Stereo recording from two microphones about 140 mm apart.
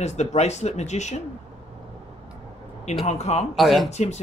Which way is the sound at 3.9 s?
50° left (ahead or behind).